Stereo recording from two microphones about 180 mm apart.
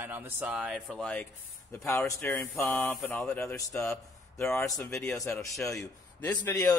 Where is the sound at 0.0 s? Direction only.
10° right (ahead or behind).